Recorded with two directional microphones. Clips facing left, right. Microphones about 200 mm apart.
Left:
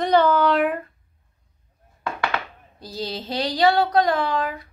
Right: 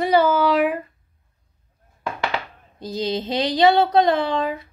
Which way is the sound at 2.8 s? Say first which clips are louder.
Right 6 dB; 20° right (ahead or behind).